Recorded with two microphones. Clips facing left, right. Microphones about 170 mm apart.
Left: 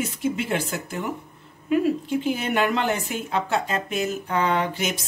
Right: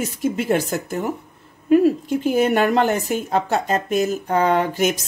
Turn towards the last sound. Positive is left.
turn(degrees=-45)  # may be behind; listen again after turning